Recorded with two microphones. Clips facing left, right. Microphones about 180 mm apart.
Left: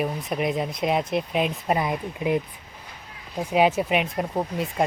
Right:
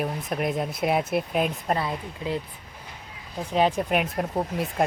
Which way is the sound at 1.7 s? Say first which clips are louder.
Left 3 dB; 15° left (ahead or behind).